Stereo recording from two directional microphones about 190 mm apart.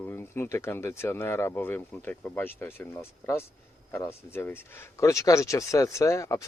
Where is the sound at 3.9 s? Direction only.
10° left (ahead or behind).